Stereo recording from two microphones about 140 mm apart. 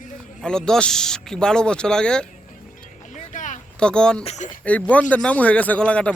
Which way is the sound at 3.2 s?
60° left (ahead or behind).